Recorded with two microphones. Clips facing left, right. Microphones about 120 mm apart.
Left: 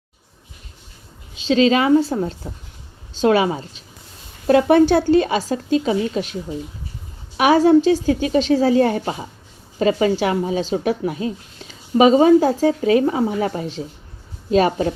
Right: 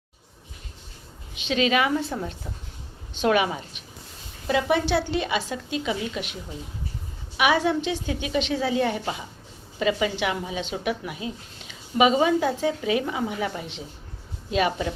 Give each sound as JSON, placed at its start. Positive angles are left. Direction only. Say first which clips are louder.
{"t": 1.4, "sound": "speech", "louder": "left 7 dB", "side_deg": 30}
{"t": 4.4, "sound": "speech", "louder": "left 10 dB", "side_deg": 50}
{"t": 7.3, "sound": "speech", "louder": "left 9 dB", "side_deg": 40}